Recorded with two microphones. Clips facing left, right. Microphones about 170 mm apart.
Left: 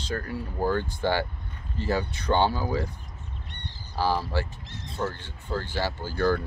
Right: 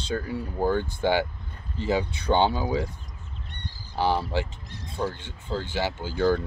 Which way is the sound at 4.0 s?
20° right (ahead or behind).